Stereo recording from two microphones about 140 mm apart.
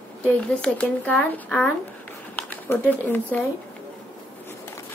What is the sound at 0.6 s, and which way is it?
Speech, 10° left (ahead or behind).